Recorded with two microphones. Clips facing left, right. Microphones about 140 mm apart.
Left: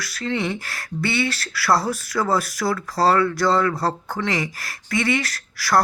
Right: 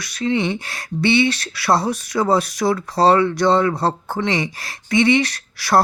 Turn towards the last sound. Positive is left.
turn(degrees=-25)  # may be behind; listen again after turning